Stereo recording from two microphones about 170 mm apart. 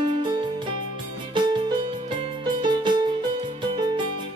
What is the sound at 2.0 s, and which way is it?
Music, 25° right (ahead or behind).